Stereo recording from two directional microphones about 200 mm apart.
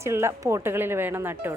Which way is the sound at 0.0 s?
15° right (ahead or behind).